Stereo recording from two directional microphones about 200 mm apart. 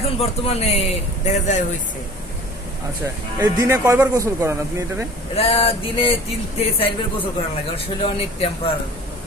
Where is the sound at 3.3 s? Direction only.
15° right (ahead or behind).